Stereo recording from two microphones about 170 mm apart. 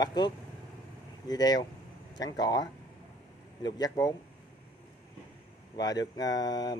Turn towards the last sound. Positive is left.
turn(degrees=20)  # may be behind; listen again after turning